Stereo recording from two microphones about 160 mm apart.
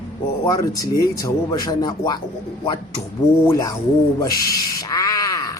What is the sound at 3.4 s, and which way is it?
A man's voice, 20° left (ahead or behind).